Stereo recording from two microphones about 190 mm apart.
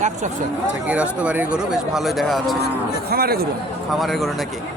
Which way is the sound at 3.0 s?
55° right (ahead or behind).